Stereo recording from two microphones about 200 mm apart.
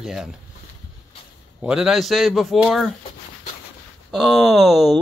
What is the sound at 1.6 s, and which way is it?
Speech, 5° right (ahead or behind).